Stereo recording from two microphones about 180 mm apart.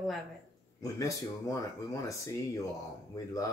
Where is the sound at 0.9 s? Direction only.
20° left (ahead or behind).